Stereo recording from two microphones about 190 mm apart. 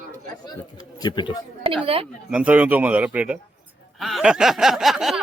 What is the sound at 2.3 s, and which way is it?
Speech, 5° right (ahead or behind).